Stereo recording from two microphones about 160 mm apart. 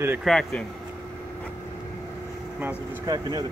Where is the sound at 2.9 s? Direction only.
25° right (ahead or behind).